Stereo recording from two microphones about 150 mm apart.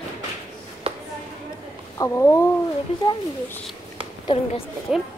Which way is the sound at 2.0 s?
20° left (ahead or behind).